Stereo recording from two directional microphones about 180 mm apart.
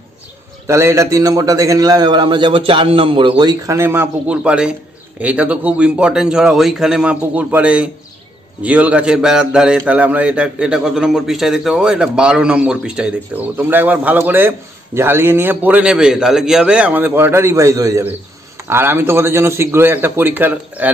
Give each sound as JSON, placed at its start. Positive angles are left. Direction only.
{"t": 0.7, "sound": "a man's voice", "side_deg": -15}